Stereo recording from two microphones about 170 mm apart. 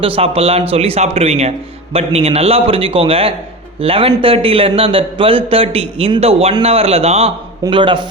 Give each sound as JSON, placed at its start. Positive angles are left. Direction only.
{"t": 0.2, "sound": "a man's voice", "side_deg": -35}